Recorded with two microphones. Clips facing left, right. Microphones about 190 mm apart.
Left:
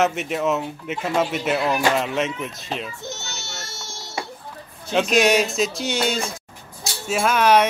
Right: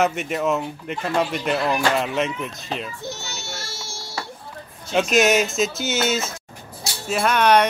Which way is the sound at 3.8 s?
20° left (ahead or behind).